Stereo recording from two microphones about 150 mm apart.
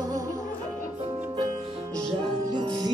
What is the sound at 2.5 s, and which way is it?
Music, 30° right (ahead or behind).